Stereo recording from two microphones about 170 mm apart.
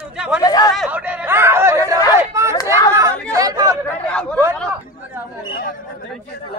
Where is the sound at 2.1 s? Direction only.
15° right (ahead or behind).